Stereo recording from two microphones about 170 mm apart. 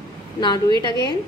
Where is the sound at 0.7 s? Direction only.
25° left (ahead or behind).